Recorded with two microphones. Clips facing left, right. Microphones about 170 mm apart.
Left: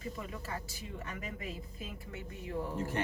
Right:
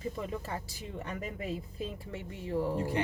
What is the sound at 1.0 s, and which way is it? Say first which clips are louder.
Speech: right 6 dB; 35° right (ahead or behind).